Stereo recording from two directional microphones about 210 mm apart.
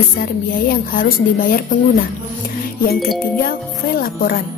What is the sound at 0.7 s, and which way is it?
Speech, 40° left (ahead or behind).